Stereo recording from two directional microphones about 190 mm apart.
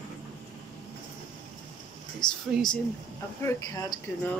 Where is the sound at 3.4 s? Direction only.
20° left (ahead or behind).